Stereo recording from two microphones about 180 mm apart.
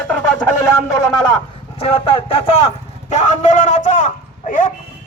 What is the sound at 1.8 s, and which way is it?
A man's voice, 30° left (ahead or behind).